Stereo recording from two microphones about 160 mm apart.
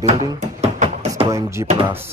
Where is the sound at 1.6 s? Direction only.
25° right (ahead or behind).